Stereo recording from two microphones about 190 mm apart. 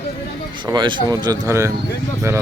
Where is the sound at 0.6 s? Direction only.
25° right (ahead or behind).